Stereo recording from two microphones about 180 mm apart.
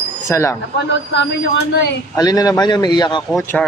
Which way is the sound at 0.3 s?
15° left (ahead or behind).